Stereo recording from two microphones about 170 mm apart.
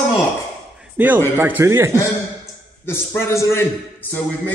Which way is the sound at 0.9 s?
10° right (ahead or behind).